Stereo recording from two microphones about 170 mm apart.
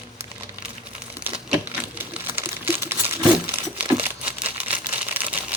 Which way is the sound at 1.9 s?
10° right (ahead or behind).